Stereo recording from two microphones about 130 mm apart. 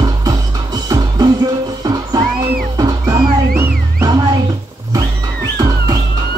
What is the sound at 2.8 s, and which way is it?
Music, 30° right (ahead or behind).